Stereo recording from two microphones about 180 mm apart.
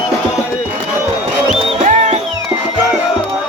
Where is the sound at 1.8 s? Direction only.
40° right (ahead or behind).